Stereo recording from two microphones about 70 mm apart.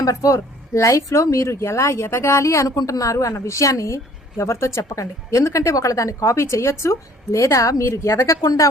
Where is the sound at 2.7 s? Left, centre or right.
Left.